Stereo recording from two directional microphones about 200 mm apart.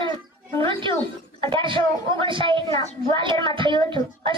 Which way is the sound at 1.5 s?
25° right (ahead or behind).